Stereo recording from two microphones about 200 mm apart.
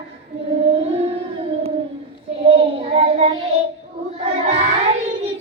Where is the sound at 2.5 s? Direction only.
30° right (ahead or behind).